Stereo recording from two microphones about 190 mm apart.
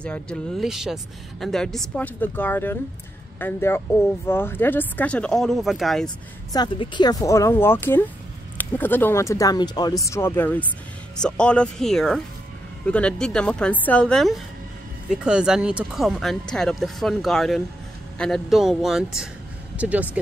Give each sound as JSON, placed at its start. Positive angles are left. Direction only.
{"t": 0.0, "sound": "speech", "side_deg": 5}
{"t": 6.0, "sound": "speech", "side_deg": 20}